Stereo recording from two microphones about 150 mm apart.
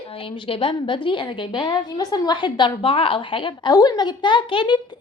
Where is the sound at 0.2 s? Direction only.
35° left (ahead or behind).